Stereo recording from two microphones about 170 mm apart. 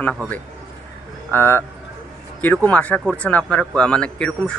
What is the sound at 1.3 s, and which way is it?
Speech, 10° left (ahead or behind).